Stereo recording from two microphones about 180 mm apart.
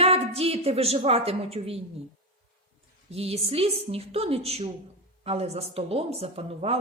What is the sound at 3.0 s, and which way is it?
A man's voice, 35° right (ahead or behind).